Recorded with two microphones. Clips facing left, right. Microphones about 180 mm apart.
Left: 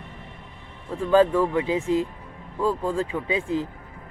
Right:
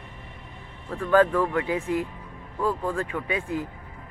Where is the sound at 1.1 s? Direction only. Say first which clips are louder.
Left 2 dB; 20° left (ahead or behind).